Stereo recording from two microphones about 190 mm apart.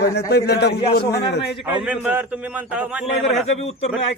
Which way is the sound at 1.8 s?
5° right (ahead or behind).